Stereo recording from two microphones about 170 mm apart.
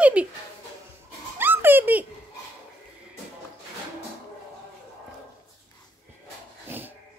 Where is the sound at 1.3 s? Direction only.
10° right (ahead or behind).